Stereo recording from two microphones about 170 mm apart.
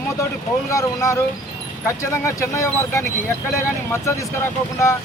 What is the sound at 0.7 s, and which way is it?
Speech, 20° left (ahead or behind).